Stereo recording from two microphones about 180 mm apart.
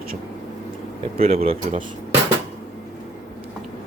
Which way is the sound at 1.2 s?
35° right (ahead or behind).